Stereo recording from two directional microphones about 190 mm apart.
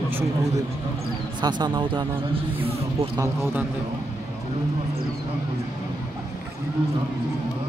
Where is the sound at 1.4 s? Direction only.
25° right (ahead or behind).